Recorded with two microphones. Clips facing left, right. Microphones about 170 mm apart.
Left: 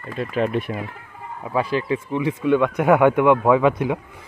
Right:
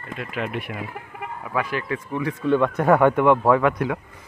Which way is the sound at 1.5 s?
25° left (ahead or behind).